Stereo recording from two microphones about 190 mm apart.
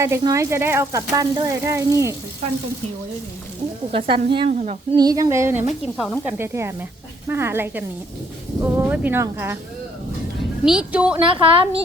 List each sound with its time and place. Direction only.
0.0 s speech: 15° right (ahead or behind)
3.9 s speech: 25° right (ahead or behind)
4.5 s speech: 35° right (ahead or behind)
4.9 s speech: 20° right (ahead or behind)
5.8 s speech: centre (ahead or behind)
10.7 s speech: 5° right (ahead or behind)
11.2 s speech: 25° right (ahead or behind)